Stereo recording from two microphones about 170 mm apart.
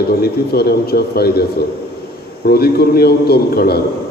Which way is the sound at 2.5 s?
65° left (ahead or behind).